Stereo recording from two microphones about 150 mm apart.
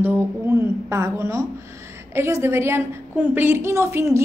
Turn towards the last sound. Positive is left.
turn(degrees=-15)  # may be behind; listen again after turning